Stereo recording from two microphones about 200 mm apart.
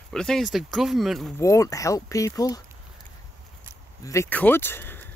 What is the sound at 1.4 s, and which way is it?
Speech, 15° left (ahead or behind).